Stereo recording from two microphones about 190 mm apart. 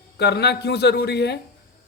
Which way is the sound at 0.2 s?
60° left (ahead or behind).